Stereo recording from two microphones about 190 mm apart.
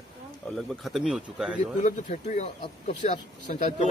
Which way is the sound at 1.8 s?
40° left (ahead or behind).